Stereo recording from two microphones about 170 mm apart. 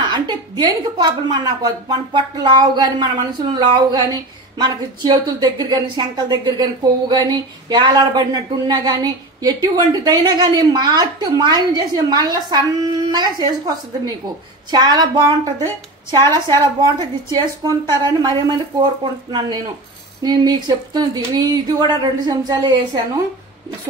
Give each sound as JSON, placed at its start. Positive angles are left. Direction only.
{"t": 0.0, "sound": "speech", "side_deg": -25}
{"t": 20.2, "sound": "speech", "side_deg": -25}